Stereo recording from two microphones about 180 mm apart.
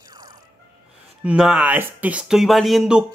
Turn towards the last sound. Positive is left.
turn(degrees=-5)  # may be behind; listen again after turning